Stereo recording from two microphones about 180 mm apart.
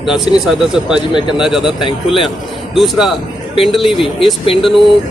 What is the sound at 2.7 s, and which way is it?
Speech, centre (ahead or behind).